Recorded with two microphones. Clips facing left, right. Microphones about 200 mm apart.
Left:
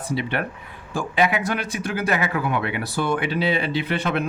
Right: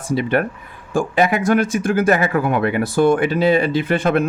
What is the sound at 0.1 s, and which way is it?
Speech, 45° right (ahead or behind).